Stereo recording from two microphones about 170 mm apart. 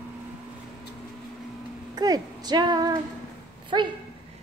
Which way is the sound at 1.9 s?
25° right (ahead or behind).